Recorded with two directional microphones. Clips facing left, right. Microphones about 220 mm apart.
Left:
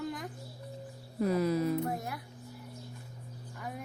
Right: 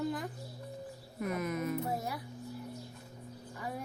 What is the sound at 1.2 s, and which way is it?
Speech, 30° left (ahead or behind).